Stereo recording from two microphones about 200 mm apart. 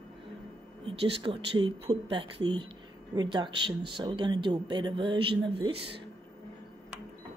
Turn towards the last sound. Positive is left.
turn(degrees=-25)  # may be behind; listen again after turning